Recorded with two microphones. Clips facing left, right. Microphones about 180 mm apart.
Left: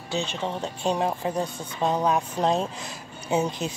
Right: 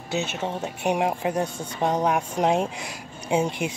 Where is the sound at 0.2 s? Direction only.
10° right (ahead or behind).